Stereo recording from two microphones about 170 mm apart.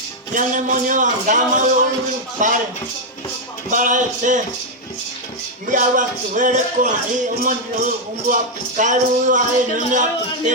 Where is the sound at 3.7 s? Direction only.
50° right (ahead or behind).